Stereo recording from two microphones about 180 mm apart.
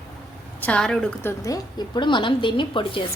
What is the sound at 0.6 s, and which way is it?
A woman's voice, 5° left (ahead or behind).